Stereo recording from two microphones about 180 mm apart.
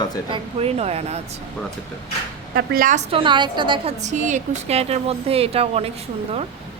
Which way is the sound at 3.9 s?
40° right (ahead or behind).